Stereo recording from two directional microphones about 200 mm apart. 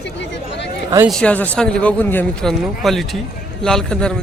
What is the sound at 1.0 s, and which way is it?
Speech, 5° left (ahead or behind).